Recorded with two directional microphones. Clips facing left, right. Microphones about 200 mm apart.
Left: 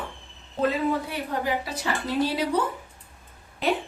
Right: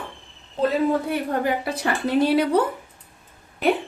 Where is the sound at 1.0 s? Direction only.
55° right (ahead or behind).